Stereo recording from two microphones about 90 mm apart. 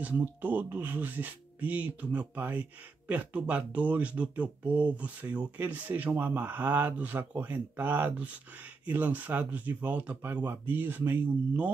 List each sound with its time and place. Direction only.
0.0 s speech: 20° right (ahead or behind)